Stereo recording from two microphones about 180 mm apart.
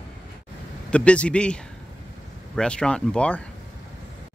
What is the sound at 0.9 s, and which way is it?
A man's voice, 5° left (ahead or behind).